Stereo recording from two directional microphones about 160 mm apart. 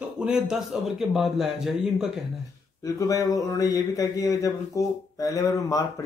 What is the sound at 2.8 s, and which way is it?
A man's voice, 20° left (ahead or behind).